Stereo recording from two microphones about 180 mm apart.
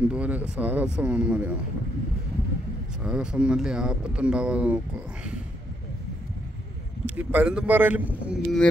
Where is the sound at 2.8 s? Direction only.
5° right (ahead or behind).